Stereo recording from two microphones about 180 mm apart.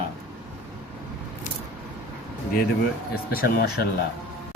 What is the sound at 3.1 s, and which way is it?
Speech, 55° left (ahead or behind).